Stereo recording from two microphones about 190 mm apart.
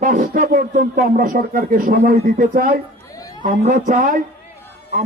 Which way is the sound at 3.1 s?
20° left (ahead or behind).